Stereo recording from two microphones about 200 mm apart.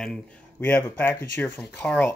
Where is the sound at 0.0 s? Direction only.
5° left (ahead or behind).